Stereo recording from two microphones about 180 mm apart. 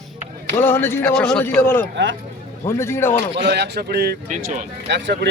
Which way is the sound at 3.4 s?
70° right (ahead or behind).